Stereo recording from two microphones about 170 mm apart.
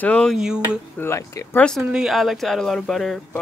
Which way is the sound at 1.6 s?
Centre (ahead or behind).